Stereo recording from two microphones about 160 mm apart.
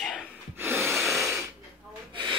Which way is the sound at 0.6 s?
15° right (ahead or behind).